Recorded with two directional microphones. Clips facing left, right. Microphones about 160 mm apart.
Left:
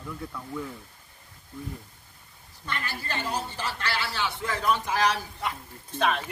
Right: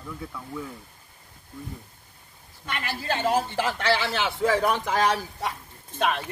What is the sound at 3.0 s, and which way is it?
A man's voice, 90° right.